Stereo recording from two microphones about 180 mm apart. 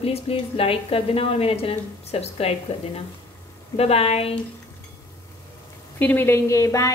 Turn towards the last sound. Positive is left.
turn(degrees=15)  # may be behind; listen again after turning